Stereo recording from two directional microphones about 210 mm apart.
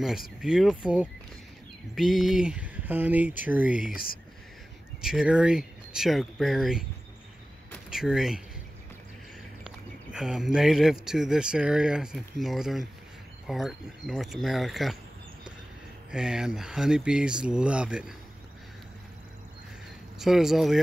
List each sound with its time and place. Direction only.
0.4 s speech: centre (ahead or behind)
3.8 s speech: 45° left (ahead or behind)
5.0 s speech: 5° right (ahead or behind)
9.7 s speech: centre (ahead or behind)
16.1 s speech: 5° right (ahead or behind)
20.2 s speech: centre (ahead or behind)